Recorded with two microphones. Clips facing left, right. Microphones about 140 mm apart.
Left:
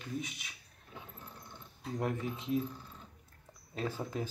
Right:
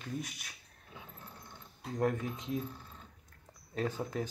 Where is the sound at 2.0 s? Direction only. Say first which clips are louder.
Right 4 dB; 5° left (ahead or behind).